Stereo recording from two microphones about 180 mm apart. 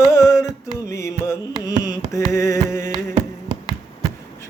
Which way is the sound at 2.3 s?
15° left (ahead or behind).